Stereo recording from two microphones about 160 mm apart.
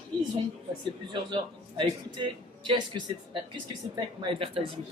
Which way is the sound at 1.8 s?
30° right (ahead or behind).